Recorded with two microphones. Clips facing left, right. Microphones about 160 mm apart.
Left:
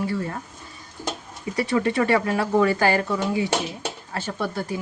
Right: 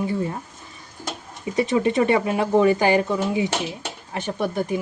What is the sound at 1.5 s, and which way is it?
Speech, 20° right (ahead or behind).